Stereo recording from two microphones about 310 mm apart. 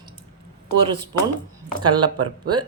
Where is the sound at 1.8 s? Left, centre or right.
Centre.